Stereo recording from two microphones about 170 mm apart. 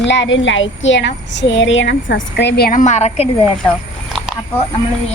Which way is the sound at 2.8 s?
45° left (ahead or behind).